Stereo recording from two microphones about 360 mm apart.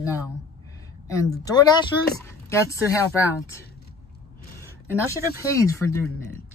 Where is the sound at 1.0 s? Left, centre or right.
Centre.